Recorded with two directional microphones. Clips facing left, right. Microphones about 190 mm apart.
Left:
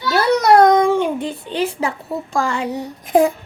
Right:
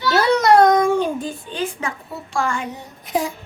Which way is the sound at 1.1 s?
75° left (ahead or behind).